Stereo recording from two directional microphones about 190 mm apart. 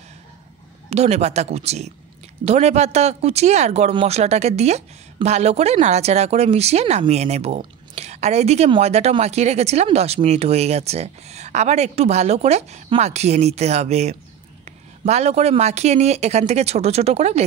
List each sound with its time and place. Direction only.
0.8 s speech: 35° right (ahead or behind)